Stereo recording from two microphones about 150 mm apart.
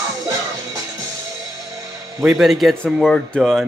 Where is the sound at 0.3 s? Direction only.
20° right (ahead or behind).